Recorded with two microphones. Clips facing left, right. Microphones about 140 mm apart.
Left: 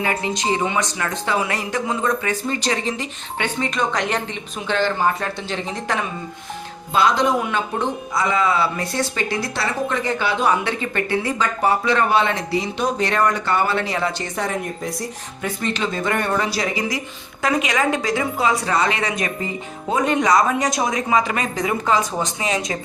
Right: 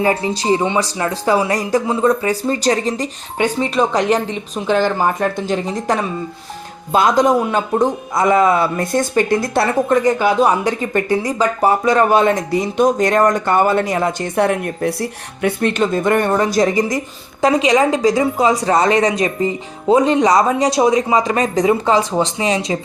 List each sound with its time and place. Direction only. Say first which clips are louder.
0.0 s a man's voice: right 5 dB; 30° right (ahead or behind); by 17.0 s 45° right (ahead or behind)
17.4 s speech: right 7 dB; 35° right (ahead or behind)